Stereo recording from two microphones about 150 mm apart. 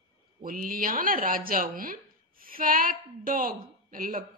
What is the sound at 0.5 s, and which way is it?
A woman's voice, 70° right (ahead or behind).